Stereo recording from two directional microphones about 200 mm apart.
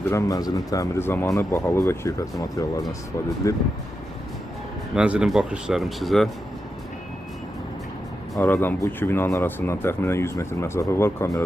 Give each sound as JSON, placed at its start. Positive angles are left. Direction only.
{"t": 0.1, "sound": "speech", "side_deg": 15}
{"t": 4.9, "sound": "speech", "side_deg": -5}
{"t": 8.4, "sound": "speech", "side_deg": 10}